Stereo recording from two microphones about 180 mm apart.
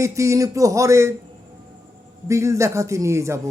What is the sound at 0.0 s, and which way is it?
A man's voice, 15° right (ahead or behind).